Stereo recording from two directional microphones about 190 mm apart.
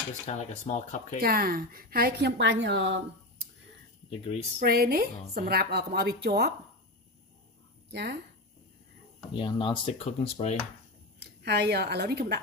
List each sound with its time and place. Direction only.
0.3 s speech: 35° left (ahead or behind)
1.2 s a woman's voice: 50° right (ahead or behind); by 3.0 s 70° right (ahead or behind)
4.1 s speech: 30° left (ahead or behind)
4.6 s a woman's voice: 50° right (ahead or behind)
7.9 s speech: 60° right (ahead or behind)
9.3 s speech: 25° left (ahead or behind)
11.1 s a woman's voice: 60° right (ahead or behind)